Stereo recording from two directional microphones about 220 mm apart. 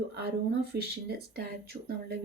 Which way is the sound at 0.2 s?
45° right (ahead or behind).